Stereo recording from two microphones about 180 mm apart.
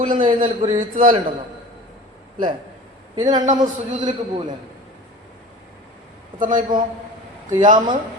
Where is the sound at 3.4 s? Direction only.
45° right (ahead or behind).